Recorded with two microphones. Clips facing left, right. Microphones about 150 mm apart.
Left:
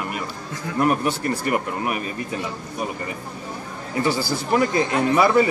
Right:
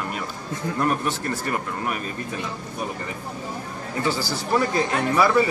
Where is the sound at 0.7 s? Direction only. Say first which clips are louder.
Left 4 dB; 15° left (ahead or behind).